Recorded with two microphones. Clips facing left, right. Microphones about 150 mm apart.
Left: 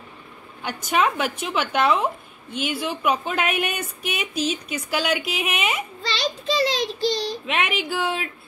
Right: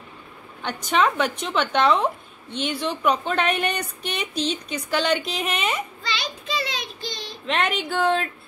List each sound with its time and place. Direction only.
0.6 s a woman's voice: 5° left (ahead or behind)
6.2 s a child's voice: 35° left (ahead or behind)
7.4 s a woman's voice: 5° left (ahead or behind)